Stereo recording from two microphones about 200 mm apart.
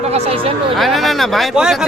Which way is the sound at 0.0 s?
30° right (ahead or behind).